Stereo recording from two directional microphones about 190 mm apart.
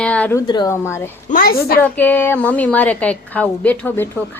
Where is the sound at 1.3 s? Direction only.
50° left (ahead or behind).